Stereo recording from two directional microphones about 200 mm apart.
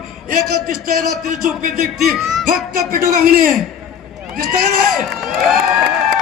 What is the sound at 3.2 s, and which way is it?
Speech, 45° right (ahead or behind).